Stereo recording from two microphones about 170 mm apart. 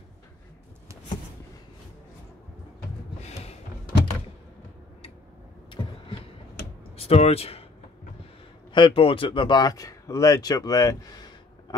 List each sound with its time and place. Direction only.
7.0 s speech: 35° left (ahead or behind)
8.7 s speech: 30° left (ahead or behind)